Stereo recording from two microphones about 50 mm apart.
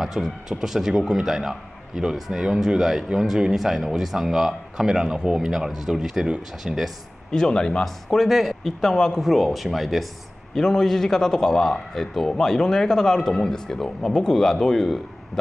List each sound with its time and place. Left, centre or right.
0.0 s a man's voice: centre
7.2 s a man's voice: centre
9.2 s speech: centre
10.5 s a man's voice: centre